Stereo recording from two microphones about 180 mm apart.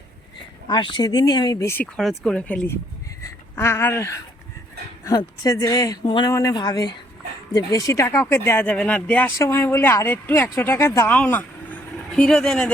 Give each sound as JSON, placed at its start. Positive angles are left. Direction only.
{"t": 0.7, "sound": "speech", "side_deg": 25}
{"t": 2.0, "sound": "speech", "side_deg": 0}